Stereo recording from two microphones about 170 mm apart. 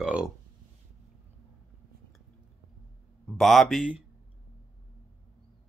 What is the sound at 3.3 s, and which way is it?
Speech, centre (ahead or behind).